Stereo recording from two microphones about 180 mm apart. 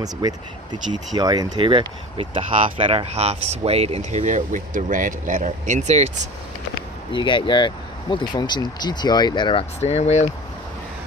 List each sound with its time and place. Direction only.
0.0 s speech: 20° right (ahead or behind); by 6.1 s 40° right (ahead or behind)
7.1 s speech: 25° left (ahead or behind)